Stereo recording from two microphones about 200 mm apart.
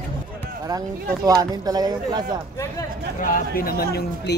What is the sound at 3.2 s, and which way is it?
Speech, 45° left (ahead or behind).